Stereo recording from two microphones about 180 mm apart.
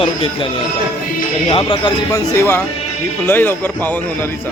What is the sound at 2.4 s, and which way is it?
A man's voice, 15° left (ahead or behind).